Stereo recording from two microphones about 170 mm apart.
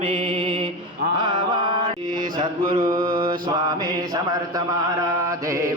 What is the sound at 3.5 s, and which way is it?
Mantra, 25° right (ahead or behind).